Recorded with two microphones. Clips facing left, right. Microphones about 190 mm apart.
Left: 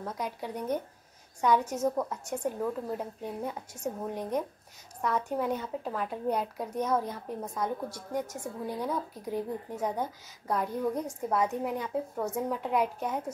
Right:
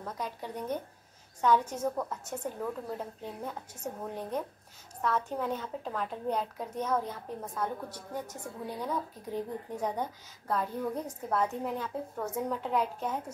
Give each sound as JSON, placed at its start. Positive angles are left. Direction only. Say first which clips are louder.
{"t": 0.0, "sound": "a woman's voice", "louder": "left 3 dB", "side_deg": 10}